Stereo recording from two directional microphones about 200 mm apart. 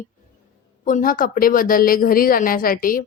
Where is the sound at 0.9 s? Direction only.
45° left (ahead or behind).